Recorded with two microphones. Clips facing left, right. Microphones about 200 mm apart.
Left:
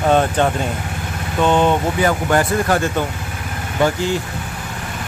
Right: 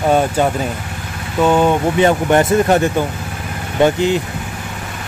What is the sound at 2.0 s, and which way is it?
Speech, 25° right (ahead or behind).